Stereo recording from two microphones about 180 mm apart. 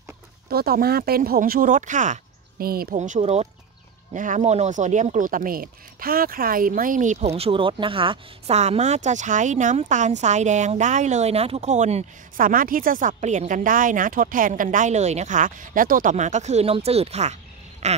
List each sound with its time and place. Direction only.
0.5 s speech: 55° right (ahead or behind)
2.6 s speech: 55° right (ahead or behind)
3.0 s speech: 40° right (ahead or behind)